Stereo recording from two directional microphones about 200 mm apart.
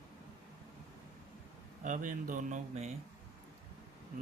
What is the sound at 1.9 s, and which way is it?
Speech, 40° right (ahead or behind).